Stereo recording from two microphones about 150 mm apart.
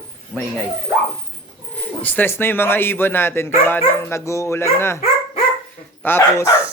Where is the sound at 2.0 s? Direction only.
10° left (ahead or behind).